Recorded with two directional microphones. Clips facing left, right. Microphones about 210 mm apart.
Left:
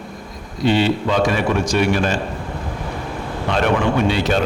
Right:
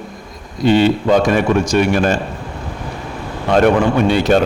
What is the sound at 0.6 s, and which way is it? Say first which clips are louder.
A man's voice: right 5 dB; 45° right (ahead or behind).